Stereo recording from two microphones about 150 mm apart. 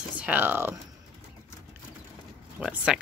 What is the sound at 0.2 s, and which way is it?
Speech, 10° right (ahead or behind).